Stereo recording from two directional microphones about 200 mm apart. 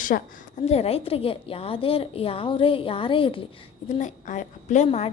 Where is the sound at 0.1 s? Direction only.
50° left (ahead or behind).